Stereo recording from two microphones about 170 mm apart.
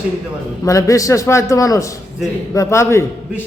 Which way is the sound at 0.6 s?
20° left (ahead or behind).